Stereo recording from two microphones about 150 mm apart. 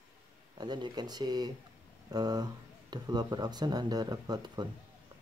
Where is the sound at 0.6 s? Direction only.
30° right (ahead or behind).